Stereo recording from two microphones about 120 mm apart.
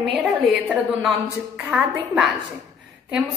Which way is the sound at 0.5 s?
10° right (ahead or behind).